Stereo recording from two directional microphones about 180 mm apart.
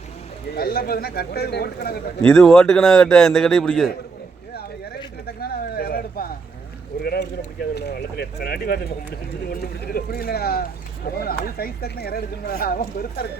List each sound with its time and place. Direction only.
0.5 s speech: 60° left (ahead or behind)
2.2 s a man's voice: 5° left (ahead or behind)
5.2 s a sound: 60° left (ahead or behind)
7.0 s speech: 60° left (ahead or behind)